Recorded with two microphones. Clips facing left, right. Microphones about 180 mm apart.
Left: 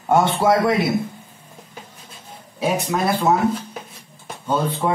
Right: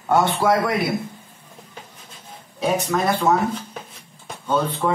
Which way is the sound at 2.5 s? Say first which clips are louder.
Even; 10° left (ahead or behind).